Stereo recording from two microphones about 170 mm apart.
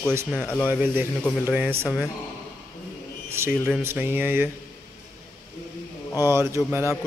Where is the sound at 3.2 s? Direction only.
15° right (ahead or behind).